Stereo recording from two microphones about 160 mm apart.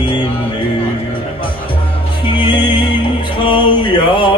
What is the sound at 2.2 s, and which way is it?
Music, 30° left (ahead or behind).